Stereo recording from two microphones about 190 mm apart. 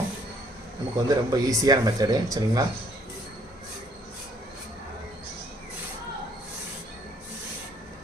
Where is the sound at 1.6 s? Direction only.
20° right (ahead or behind).